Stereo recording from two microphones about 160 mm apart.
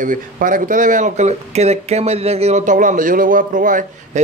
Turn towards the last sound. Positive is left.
turn(degrees=-55)  # may be behind; listen again after turning